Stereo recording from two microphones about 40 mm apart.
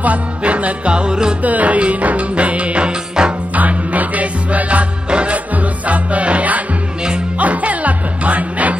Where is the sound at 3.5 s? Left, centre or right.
Right.